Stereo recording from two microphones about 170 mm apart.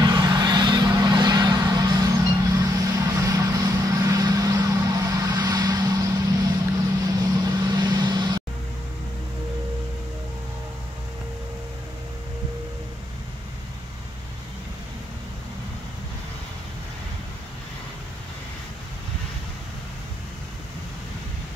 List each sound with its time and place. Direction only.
0.0 s vehicle: 25° right (ahead or behind)